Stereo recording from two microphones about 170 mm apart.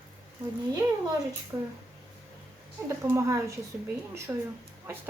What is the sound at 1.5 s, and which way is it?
Speech, 15° right (ahead or behind).